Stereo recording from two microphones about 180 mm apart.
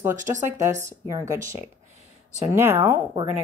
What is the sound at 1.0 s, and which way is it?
Speech, 15° right (ahead or behind).